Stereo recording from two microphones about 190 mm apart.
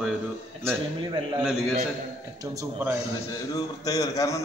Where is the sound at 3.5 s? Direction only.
20° left (ahead or behind).